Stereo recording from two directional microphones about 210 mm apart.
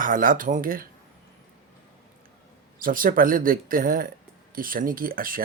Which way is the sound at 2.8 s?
40° right (ahead or behind).